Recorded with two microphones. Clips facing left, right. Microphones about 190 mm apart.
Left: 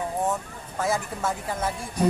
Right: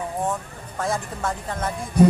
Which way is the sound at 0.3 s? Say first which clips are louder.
Even; 5° left (ahead or behind).